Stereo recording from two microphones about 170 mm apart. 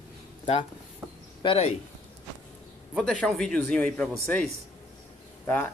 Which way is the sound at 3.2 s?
5° left (ahead or behind).